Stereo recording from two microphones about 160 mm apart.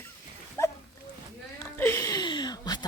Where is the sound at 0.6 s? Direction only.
15° left (ahead or behind).